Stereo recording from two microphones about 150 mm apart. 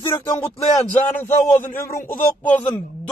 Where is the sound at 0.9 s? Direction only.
15° left (ahead or behind).